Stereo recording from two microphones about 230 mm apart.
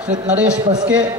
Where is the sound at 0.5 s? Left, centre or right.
Centre.